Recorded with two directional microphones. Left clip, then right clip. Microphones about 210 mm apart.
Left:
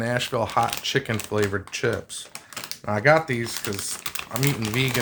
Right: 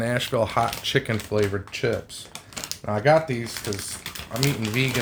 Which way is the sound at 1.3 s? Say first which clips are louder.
Even; 20° left (ahead or behind).